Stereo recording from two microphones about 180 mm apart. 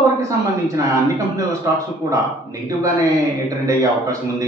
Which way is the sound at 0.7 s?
15° right (ahead or behind).